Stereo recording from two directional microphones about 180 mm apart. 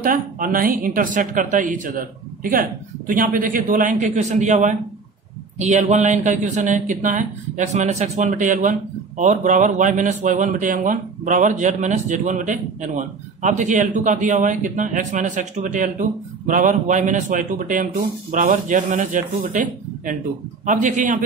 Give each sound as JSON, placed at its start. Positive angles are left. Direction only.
{"t": 0.0, "sound": "speech", "side_deg": -50}